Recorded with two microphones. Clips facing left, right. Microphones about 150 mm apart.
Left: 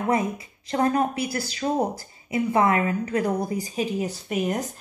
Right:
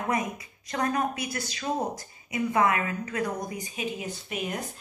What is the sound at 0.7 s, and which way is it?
A woman's voice, 30° left (ahead or behind).